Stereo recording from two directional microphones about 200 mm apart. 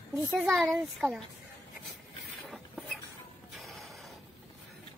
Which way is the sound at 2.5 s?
Centre (ahead or behind).